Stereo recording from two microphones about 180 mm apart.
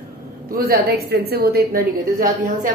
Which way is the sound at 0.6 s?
60° right (ahead or behind).